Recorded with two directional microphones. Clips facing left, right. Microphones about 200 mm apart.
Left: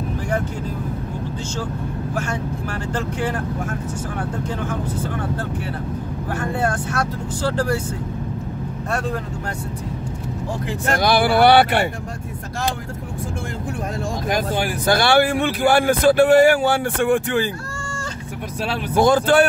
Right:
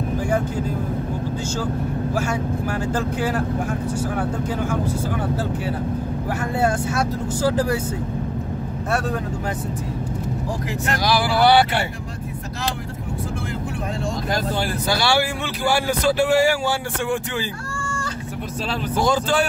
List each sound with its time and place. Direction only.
2.1 s speech: 10° right (ahead or behind)
6.6 s speech: 10° right (ahead or behind)
11.0 s speech: 60° left (ahead or behind)
14.9 s speech: 55° left (ahead or behind)
18.9 s speech: 55° left (ahead or behind)